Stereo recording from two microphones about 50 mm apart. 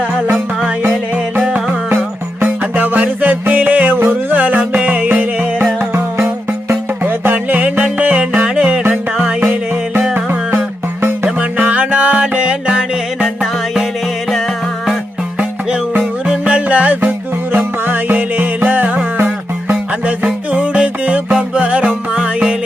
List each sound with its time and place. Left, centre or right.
2.4 s music: right
5.8 s music: right
7.0 s music: right; by 9.3 s centre
10.2 s music: right
11.6 s music: right
13.2 s music: centre
16.4 s music: right
19.7 s music: right